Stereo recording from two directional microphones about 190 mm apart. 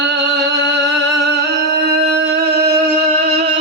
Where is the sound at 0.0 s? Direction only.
65° right (ahead or behind).